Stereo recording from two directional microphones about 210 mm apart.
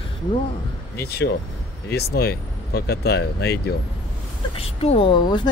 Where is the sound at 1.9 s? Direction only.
50° left (ahead or behind).